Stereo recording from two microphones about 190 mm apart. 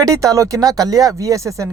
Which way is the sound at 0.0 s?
20° right (ahead or behind).